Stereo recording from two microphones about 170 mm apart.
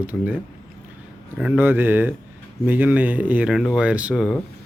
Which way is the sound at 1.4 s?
10° right (ahead or behind).